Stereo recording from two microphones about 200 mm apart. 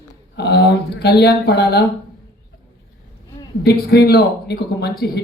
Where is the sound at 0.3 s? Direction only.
55° left (ahead or behind).